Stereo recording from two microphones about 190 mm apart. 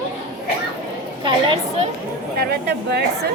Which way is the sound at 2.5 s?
60° right (ahead or behind).